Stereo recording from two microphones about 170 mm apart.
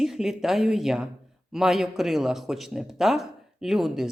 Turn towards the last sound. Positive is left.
turn(degrees=0)  # may be behind; listen again after turning